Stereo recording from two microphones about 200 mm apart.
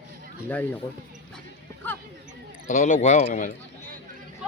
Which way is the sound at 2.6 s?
35° left (ahead or behind).